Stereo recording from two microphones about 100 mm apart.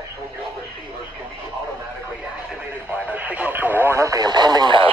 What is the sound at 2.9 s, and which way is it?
Radio, 15° right (ahead or behind).